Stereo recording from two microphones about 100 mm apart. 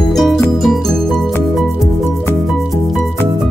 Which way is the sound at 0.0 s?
Centre (ahead or behind).